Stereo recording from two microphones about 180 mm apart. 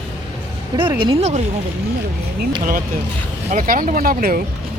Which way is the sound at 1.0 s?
30° right (ahead or behind).